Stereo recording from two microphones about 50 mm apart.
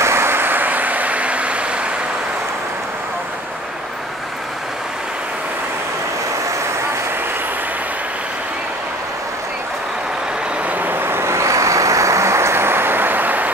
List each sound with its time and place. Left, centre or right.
0.0 s vehicle: right
10.7 s vehicle: right